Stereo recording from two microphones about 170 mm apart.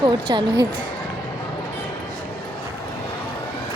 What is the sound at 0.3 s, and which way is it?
Speech, 25° right (ahead or behind).